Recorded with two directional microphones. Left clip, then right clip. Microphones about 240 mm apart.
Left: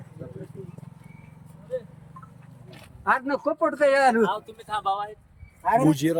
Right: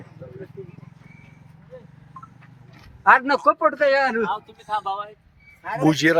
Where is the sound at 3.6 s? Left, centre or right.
Centre.